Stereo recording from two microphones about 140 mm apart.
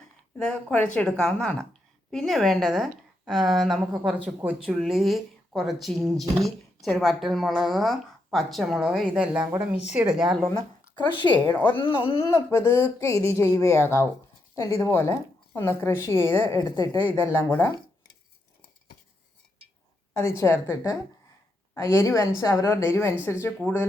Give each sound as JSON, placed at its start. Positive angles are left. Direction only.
{"t": 0.3, "sound": "a woman's voice", "side_deg": 10}
{"t": 10.9, "sound": "speech", "side_deg": 35}
{"t": 11.5, "sound": "a woman's voice", "side_deg": 15}
{"t": 11.8, "sound": "speech", "side_deg": 40}
{"t": 12.3, "sound": "a woman's voice", "side_deg": 20}
{"t": 16.7, "sound": "speech", "side_deg": 25}
{"t": 17.0, "sound": "a woman's voice", "side_deg": 15}
{"t": 20.1, "sound": "a woman's voice", "side_deg": 20}